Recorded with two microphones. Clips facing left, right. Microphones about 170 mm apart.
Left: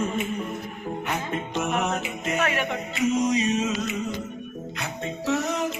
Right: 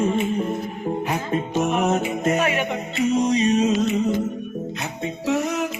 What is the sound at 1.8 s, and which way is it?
Music, 40° right (ahead or behind).